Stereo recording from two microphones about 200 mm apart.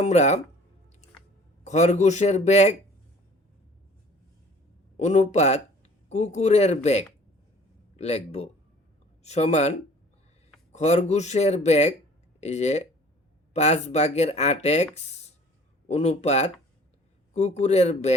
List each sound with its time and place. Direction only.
0.0 s speech: 35° left (ahead or behind)
1.6 s speech: 35° left (ahead or behind)
4.9 s speech: 35° left (ahead or behind)